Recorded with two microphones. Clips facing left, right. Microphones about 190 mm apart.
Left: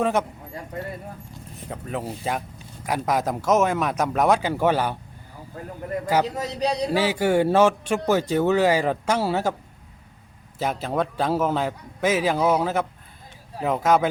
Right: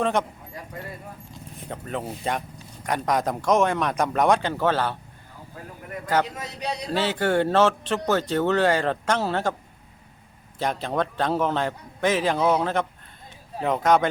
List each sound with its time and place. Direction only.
0.0 s speech: 5° left (ahead or behind)
1.6 s a man's voice: 5° left (ahead or behind)
6.3 s a man's voice: 35° left (ahead or behind)
6.9 s speech: 10° left (ahead or behind)
10.6 s a man's voice: 5° left (ahead or behind)